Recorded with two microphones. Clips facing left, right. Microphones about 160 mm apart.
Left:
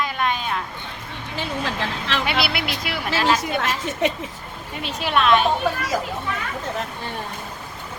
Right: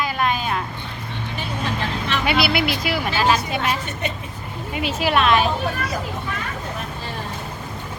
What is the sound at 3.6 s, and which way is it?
Speech, 90° left.